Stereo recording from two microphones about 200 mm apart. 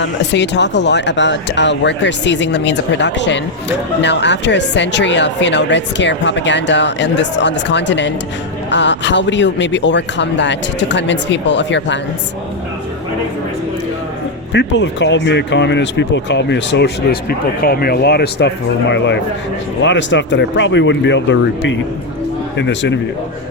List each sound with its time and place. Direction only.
0.0 s speech: 60° left (ahead or behind)
14.5 s speech: 60° left (ahead or behind)